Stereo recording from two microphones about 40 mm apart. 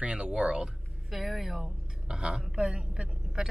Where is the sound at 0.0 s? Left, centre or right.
Right.